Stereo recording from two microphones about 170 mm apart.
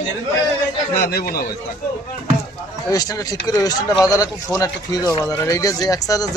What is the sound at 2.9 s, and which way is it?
Speech, 20° left (ahead or behind).